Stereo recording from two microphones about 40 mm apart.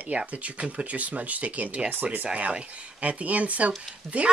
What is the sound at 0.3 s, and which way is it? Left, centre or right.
Speech, right.